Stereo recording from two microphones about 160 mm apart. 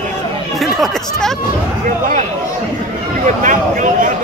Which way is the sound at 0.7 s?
5° left (ahead or behind).